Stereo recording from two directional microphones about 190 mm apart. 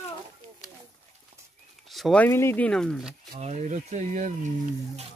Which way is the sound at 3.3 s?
35° right (ahead or behind).